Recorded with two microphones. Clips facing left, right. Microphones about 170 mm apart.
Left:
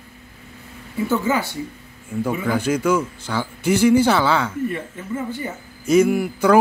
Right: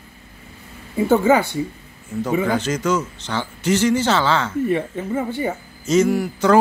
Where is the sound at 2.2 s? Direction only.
10° left (ahead or behind).